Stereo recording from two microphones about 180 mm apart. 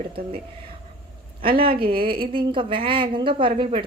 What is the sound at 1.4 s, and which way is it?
A woman's voice, 30° right (ahead or behind).